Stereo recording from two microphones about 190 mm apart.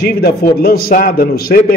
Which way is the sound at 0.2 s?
55° left (ahead or behind).